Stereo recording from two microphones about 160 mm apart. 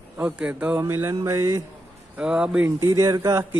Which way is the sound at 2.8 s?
20° right (ahead or behind).